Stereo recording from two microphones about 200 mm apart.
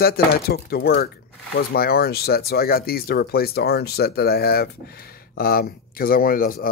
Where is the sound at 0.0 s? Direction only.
50° left (ahead or behind).